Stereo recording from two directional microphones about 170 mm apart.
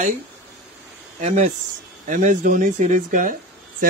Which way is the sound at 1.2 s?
40° right (ahead or behind).